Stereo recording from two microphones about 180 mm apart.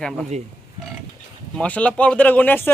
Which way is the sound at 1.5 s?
5° left (ahead or behind).